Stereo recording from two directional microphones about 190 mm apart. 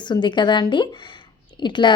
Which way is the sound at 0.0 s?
25° left (ahead or behind).